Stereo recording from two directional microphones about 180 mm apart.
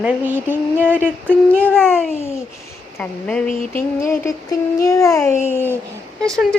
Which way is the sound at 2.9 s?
5° left (ahead or behind).